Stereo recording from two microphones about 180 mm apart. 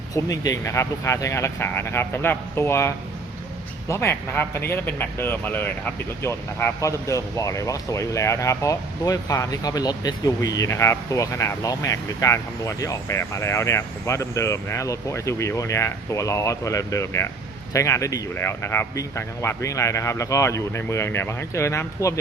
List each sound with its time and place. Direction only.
0.1 s speech: 20° left (ahead or behind)